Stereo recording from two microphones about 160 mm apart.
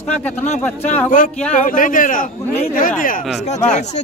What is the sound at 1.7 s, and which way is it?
A man's voice, 60° left (ahead or behind).